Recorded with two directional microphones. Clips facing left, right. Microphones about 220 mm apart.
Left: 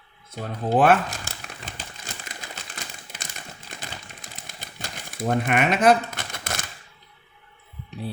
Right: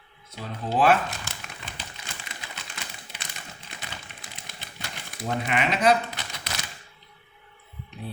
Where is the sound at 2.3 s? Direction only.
45° left (ahead or behind).